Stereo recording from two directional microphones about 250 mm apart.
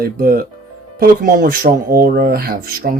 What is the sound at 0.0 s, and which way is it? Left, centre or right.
Speech, right.